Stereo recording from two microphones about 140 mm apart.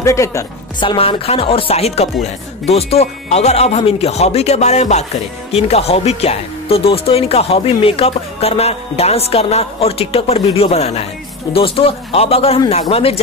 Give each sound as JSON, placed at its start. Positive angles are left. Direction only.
{"t": 0.0, "sound": "a woman's voice", "side_deg": 20}
{"t": 0.7, "sound": "speech", "side_deg": 40}